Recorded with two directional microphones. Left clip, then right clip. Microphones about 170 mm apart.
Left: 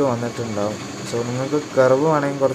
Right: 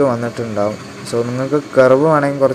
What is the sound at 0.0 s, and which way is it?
Speech, 20° right (ahead or behind).